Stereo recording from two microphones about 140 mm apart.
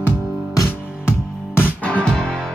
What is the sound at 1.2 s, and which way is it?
Music, 5° right (ahead or behind).